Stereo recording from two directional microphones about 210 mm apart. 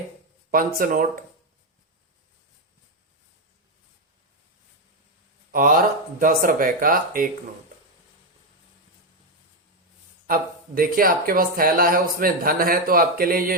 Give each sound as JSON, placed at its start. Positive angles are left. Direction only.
{"t": 0.5, "sound": "speech", "side_deg": -40}
{"t": 5.5, "sound": "speech", "side_deg": -40}
{"t": 10.2, "sound": "speech", "side_deg": -45}